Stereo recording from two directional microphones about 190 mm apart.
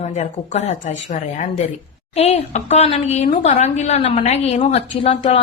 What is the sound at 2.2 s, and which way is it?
A woman's voice, 35° left (ahead or behind).